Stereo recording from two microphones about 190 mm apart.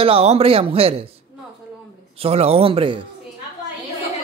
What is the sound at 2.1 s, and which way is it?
Speech, 30° right (ahead or behind).